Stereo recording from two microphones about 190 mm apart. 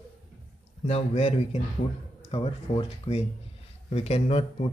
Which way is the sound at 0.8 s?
35° left (ahead or behind).